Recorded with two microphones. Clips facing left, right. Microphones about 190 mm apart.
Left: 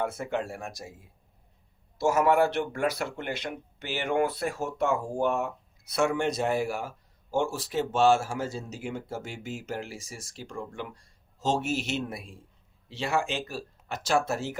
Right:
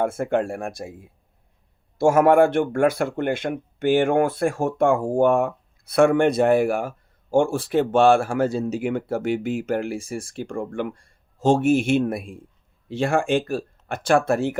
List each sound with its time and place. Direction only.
0.0 s speech: 50° right (ahead or behind)
2.0 s speech: 50° right (ahead or behind)